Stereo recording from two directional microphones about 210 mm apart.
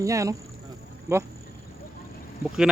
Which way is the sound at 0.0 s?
15° right (ahead or behind).